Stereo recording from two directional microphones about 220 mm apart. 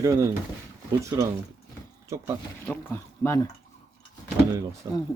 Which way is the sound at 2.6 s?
10° left (ahead or behind).